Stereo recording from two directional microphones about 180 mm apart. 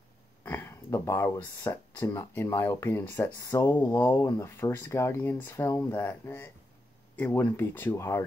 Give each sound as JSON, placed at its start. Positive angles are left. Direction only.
{"t": 0.4, "sound": "speech", "side_deg": 10}